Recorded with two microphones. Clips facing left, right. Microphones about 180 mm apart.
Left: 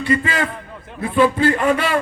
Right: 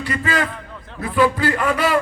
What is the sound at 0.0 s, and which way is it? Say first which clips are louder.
A man's voice: left 3 dB; 25° left (ahead or behind).